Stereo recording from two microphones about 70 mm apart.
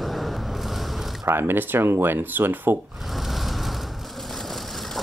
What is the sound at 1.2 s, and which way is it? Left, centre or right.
Speech, right.